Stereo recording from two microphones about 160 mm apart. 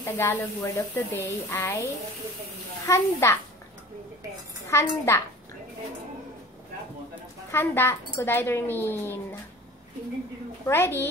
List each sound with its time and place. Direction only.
0.0 s speech: 15° left (ahead or behind)
2.9 s speech: 20° left (ahead or behind)
4.6 s speech: 15° left (ahead or behind)
7.5 s speech: 15° left (ahead or behind)
10.7 s speech: 15° left (ahead or behind)